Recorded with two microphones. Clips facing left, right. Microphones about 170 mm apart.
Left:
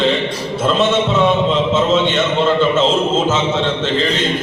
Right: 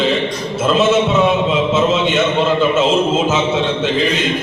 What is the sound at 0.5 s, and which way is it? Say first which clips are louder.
A man's voice: right 2 dB; 5° right (ahead or behind).